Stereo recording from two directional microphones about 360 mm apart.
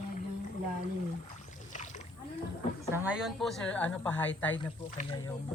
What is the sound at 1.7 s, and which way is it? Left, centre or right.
Splash, centre.